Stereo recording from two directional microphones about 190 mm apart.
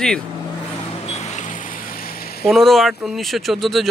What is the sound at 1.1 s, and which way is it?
Vehicle, 35° left (ahead or behind).